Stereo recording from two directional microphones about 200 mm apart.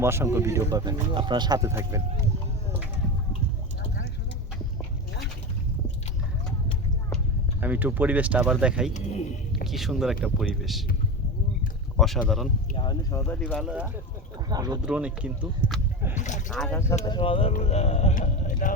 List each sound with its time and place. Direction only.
0.0 s speech: 10° right (ahead or behind)
7.6 s speech: 10° right (ahead or behind)
8.9 s speech: 35° left (ahead or behind)
9.6 s speech: centre (ahead or behind)
11.9 s speech: centre (ahead or behind)
12.7 s speech: 20° left (ahead or behind); by 14.0 s 10° right (ahead or behind)
14.5 s speech: 20° right (ahead or behind)
14.8 s speech: 5° right (ahead or behind)
16.1 s a sound: 35° left (ahead or behind)
16.5 s speech: 5° left (ahead or behind)
17.1 s speech: 25° left (ahead or behind); by 18.7 s 40° left (ahead or behind)